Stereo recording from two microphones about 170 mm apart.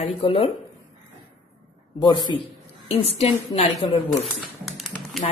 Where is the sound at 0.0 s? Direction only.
35° left (ahead or behind).